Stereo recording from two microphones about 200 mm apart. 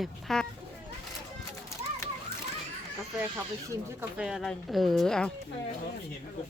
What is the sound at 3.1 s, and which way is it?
Speech, 10° right (ahead or behind).